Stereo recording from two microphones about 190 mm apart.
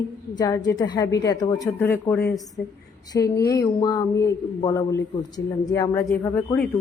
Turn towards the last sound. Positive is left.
turn(degrees=10)  # may be behind; listen again after turning